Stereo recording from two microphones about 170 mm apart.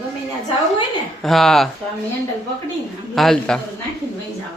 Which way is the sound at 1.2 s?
Centre (ahead or behind).